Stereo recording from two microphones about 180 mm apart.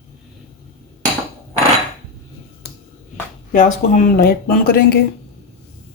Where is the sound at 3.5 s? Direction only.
45° left (ahead or behind).